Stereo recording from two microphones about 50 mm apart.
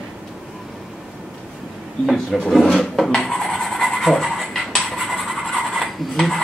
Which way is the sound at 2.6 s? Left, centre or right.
Centre.